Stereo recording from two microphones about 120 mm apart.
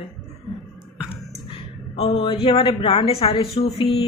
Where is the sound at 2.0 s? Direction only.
45° left (ahead or behind).